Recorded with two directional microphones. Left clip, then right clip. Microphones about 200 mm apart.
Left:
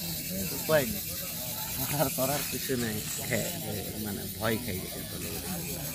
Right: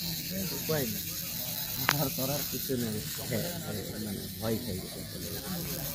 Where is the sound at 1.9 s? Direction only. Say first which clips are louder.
Left 4 dB; 20° left (ahead or behind).